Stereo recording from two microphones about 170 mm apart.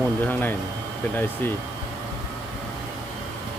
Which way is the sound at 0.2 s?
10° left (ahead or behind).